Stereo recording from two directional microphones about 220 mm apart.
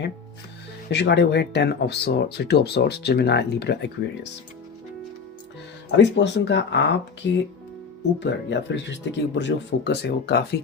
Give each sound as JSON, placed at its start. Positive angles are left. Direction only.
{"t": 0.9, "sound": "speech", "side_deg": 50}
{"t": 6.0, "sound": "speech", "side_deg": 55}